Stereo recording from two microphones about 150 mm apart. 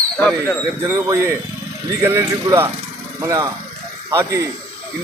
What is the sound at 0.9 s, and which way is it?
A man's voice, 20° right (ahead or behind).